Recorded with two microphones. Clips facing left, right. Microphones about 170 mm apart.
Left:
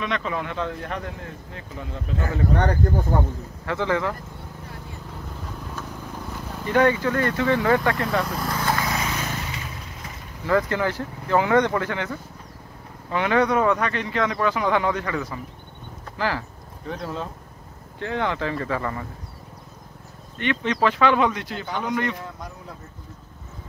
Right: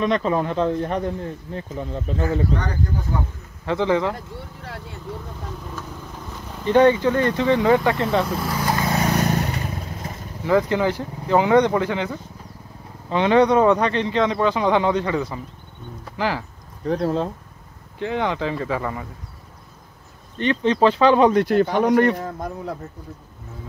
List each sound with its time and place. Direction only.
0.0 s speech: 35° right (ahead or behind)
2.5 s speech: 55° left (ahead or behind)
3.6 s speech: 20° right (ahead or behind)
6.6 s speech: 25° right (ahead or behind)
8.3 s speech: 5° right (ahead or behind)
8.8 s vehicle: 35° right (ahead or behind)
10.4 s speech: 20° right (ahead or behind)
16.8 s speech: 35° right (ahead or behind)
17.9 s speech: 15° right (ahead or behind)
20.3 s speech: 30° right (ahead or behind)